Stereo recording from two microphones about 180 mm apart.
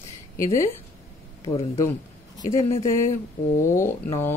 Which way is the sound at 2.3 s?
20° left (ahead or behind).